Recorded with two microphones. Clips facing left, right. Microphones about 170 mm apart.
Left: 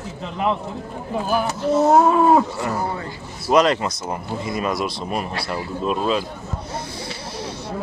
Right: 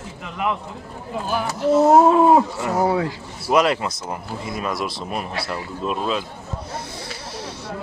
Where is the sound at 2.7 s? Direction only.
85° right.